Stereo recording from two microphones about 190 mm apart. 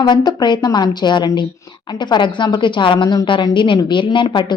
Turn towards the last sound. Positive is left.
turn(degrees=25)  # may be behind; listen again after turning